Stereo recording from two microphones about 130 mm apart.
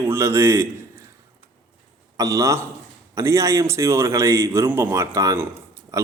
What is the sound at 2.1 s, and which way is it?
A man's voice, 25° right (ahead or behind).